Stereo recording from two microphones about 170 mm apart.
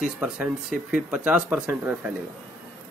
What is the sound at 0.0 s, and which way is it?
A man's voice, 5° right (ahead or behind).